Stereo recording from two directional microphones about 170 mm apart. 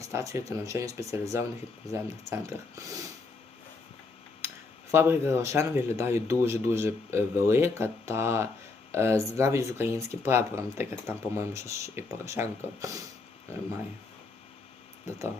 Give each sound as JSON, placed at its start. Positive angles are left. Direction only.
{"t": 0.0, "sound": "speech", "side_deg": -20}
{"t": 4.4, "sound": "speech", "side_deg": -15}